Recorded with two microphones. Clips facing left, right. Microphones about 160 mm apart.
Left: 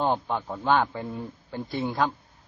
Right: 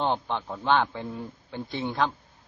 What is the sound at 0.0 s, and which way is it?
Speech, 5° left (ahead or behind).